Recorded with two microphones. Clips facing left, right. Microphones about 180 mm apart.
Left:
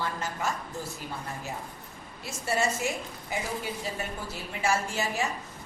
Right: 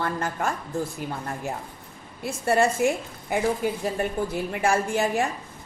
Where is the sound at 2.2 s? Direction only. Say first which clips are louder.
Right 7 dB; 55° right (ahead or behind).